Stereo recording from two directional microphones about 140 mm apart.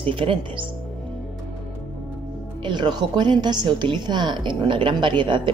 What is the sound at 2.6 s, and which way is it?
A woman's voice, 35° right (ahead or behind).